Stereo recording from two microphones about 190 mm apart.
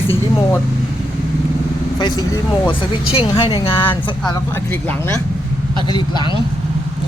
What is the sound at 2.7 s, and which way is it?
Speech, 25° left (ahead or behind).